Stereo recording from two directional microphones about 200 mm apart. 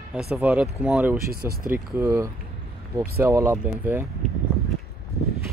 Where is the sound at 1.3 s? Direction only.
50° right (ahead or behind).